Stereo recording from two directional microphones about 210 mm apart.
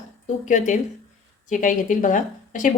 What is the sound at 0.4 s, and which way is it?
Speech, 35° left (ahead or behind).